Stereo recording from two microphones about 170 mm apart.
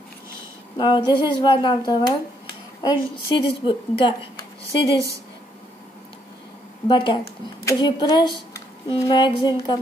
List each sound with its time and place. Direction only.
0.7 s speech: 25° left (ahead or behind)
6.9 s speech: 30° left (ahead or behind)